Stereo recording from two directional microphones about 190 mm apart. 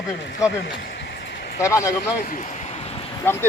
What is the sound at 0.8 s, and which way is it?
Vehicle, 65° left (ahead or behind).